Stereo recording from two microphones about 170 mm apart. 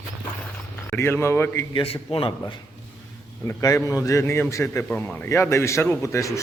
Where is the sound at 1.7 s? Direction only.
35° left (ahead or behind).